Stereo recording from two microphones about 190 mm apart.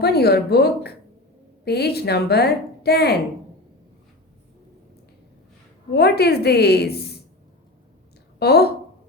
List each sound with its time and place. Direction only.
0.0 s a woman's voice: 55° left (ahead or behind)
5.9 s a woman's voice: 60° left (ahead or behind)
8.4 s a woman's voice: 60° left (ahead or behind)